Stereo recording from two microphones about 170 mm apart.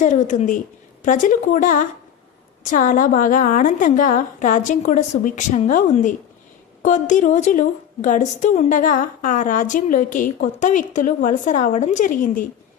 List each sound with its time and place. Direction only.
0.0 s a woman's voice: 45° left (ahead or behind)